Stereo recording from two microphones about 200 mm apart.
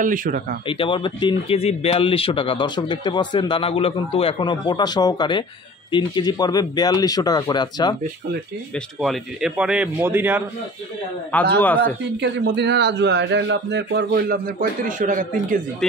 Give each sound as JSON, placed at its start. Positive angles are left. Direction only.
{"t": 0.0, "sound": "speech", "side_deg": -40}
{"t": 0.7, "sound": "speech", "side_deg": 25}
{"t": 8.7, "sound": "a man's voice", "side_deg": 0}
{"t": 11.5, "sound": "a man's voice", "side_deg": 10}
{"t": 12.0, "sound": "a man's voice", "side_deg": -60}
{"t": 14.9, "sound": "speech", "side_deg": -40}